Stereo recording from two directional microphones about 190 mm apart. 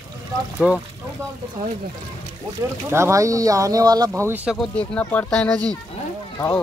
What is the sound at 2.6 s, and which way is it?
Speech, 15° right (ahead or behind).